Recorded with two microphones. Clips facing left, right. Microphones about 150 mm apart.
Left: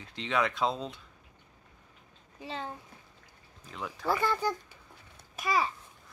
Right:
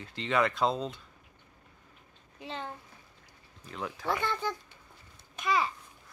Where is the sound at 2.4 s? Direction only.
5° left (ahead or behind).